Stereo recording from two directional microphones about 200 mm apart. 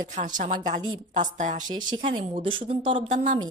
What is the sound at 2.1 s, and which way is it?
Speech, 25° right (ahead or behind).